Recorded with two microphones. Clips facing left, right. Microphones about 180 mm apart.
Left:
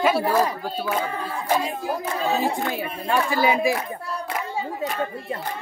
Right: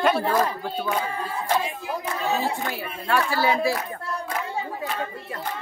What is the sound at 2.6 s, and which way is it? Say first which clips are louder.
Child singing: left 2 dB; 20° left (ahead or behind).